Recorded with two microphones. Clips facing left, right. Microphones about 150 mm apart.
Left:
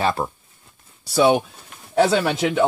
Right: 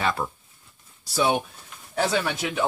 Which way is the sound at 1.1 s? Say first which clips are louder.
Left 7 dB; 90° left.